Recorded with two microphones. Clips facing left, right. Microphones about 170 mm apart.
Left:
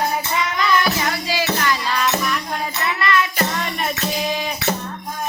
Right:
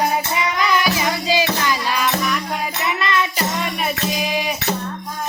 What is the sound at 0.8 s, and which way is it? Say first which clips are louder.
Music: right 1 dB; 15° right (ahead or behind).